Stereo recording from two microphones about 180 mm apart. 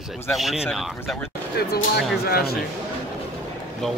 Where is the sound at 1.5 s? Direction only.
60° left (ahead or behind).